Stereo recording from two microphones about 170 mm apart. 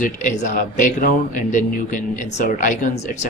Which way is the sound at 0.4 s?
45° left (ahead or behind).